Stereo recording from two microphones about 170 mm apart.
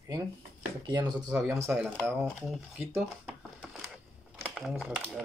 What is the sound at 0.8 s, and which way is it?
Speech, 25° right (ahead or behind).